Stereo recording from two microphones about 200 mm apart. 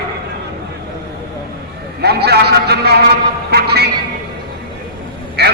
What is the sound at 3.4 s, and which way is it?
Music, 55° right (ahead or behind).